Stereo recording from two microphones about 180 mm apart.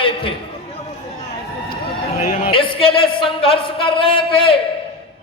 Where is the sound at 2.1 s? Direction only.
40° left (ahead or behind).